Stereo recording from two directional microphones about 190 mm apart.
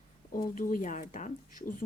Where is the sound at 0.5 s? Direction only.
45° left (ahead or behind).